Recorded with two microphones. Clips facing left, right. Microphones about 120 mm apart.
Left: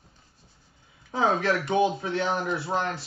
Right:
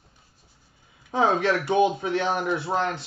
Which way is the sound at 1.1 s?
25° right (ahead or behind).